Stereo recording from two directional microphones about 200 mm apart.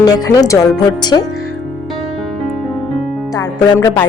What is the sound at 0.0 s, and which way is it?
Speech, 20° left (ahead or behind).